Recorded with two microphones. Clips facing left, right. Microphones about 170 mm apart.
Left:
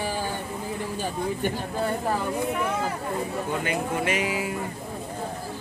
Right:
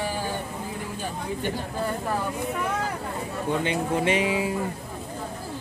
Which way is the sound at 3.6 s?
30° right (ahead or behind).